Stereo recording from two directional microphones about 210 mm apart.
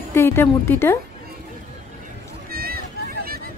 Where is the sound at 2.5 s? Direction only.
45° right (ahead or behind).